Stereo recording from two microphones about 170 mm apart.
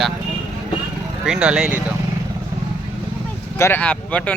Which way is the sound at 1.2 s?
5° right (ahead or behind).